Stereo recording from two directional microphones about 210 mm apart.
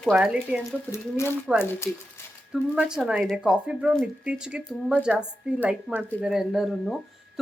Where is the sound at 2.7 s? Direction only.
5° right (ahead or behind).